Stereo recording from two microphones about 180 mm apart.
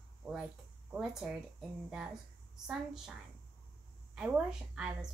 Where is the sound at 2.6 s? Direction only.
5° right (ahead or behind).